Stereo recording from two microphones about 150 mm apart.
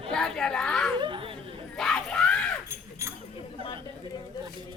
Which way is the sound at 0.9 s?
35° right (ahead or behind).